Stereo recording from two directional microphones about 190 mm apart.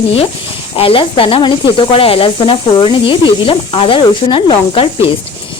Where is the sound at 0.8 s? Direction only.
30° left (ahead or behind).